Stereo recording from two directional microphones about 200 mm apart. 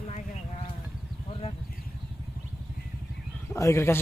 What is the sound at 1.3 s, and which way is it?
Vehicle, 30° left (ahead or behind).